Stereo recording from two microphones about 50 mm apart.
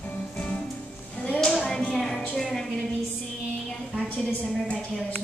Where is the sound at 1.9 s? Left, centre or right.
Centre.